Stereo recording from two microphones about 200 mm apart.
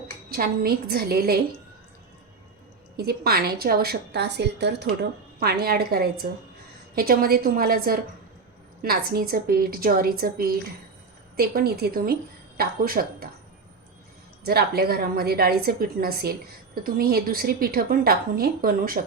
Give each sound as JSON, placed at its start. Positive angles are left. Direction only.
{"t": 0.3, "sound": "a woman's voice", "side_deg": -50}
{"t": 3.0, "sound": "a woman's voice", "side_deg": -50}
{"t": 14.4, "sound": "a woman's voice", "side_deg": -50}